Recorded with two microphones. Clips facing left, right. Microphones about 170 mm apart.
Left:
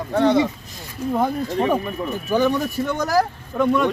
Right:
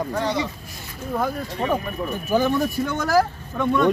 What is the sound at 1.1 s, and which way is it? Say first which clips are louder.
Speech: left 4 dB; 25° left (ahead or behind).